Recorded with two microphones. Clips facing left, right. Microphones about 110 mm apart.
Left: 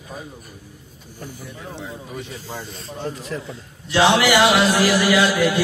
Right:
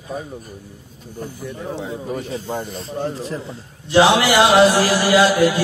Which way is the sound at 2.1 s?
40° right (ahead or behind).